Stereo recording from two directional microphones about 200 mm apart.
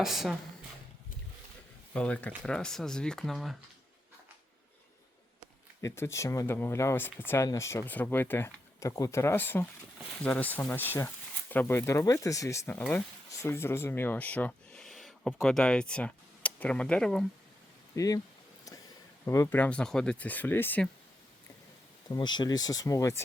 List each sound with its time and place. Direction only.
0.0 s speech: centre (ahead or behind)
1.9 s speech: 5° left (ahead or behind)
5.8 s speech: 15° left (ahead or behind)
17.9 s speech: 15° left (ahead or behind)
19.2 s speech: 15° left (ahead or behind)
22.1 s speech: 20° left (ahead or behind)